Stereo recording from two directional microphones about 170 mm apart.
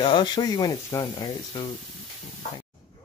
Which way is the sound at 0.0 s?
25° left (ahead or behind).